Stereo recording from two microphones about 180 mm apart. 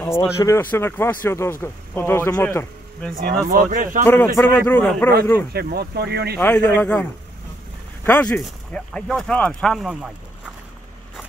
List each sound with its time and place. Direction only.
0.0 s speech: 15° left (ahead or behind)
3.4 s speech: 50° right (ahead or behind)
4.0 s speech: 10° left (ahead or behind)
5.5 s speech: 60° right (ahead or behind)
6.3 s speech: 10° left (ahead or behind)